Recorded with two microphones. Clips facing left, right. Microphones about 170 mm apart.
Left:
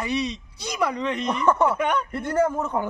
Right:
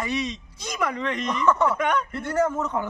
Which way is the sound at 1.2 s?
30° left (ahead or behind).